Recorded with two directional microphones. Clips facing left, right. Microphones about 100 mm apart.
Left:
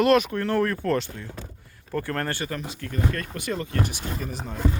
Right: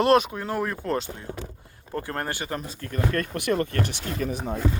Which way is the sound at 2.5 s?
40° right (ahead or behind).